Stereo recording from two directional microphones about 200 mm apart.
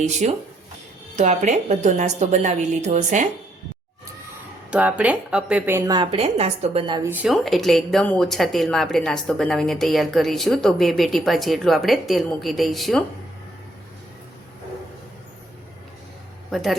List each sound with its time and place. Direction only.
1.1 s a woman's voice: 35° right (ahead or behind)
4.7 s a woman's voice: 5° right (ahead or behind); by 7.1 s 25° right (ahead or behind)
7.1 s a woman's voice: 5° right (ahead or behind)
16.5 s speech: centre (ahead or behind)